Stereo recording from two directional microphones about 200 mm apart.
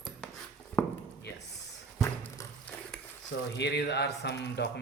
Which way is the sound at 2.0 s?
15° left (ahead or behind).